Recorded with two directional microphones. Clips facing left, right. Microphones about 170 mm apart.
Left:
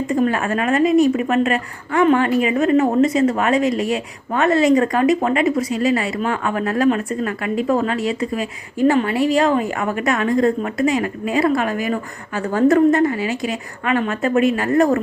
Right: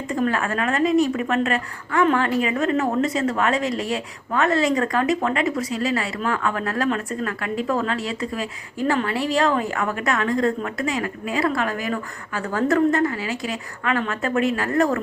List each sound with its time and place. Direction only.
0.1 s a woman's voice: 15° left (ahead or behind)